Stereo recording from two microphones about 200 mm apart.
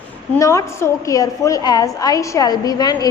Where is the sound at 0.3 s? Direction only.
15° left (ahead or behind).